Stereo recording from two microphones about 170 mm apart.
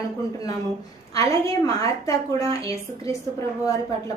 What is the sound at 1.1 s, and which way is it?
A woman's voice, 20° left (ahead or behind).